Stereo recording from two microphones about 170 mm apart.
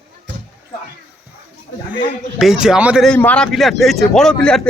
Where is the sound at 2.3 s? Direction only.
5° right (ahead or behind).